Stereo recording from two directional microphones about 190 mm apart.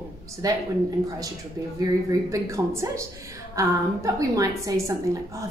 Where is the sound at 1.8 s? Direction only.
15° right (ahead or behind).